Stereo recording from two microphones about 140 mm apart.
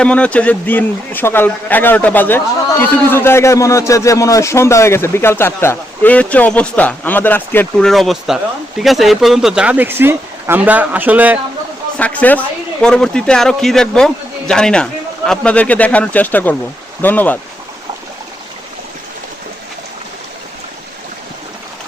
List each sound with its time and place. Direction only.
0.0 s a man's voice: 10° left (ahead or behind)
7.9 s a man's voice: centre (ahead or behind)
11.9 s a man's voice: 10° left (ahead or behind)